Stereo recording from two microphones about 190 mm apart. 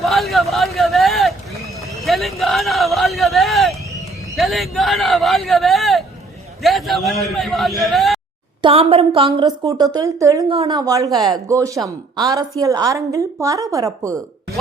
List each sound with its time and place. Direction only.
0.0 s vehicle: centre (ahead or behind)
2.0 s a sound: centre (ahead or behind)
4.4 s a man's voice: centre (ahead or behind)
8.6 s a woman's voice: 30° right (ahead or behind)